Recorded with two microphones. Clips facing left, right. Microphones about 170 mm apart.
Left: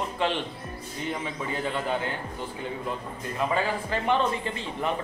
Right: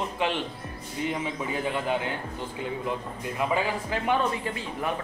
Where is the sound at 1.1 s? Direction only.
15° right (ahead or behind).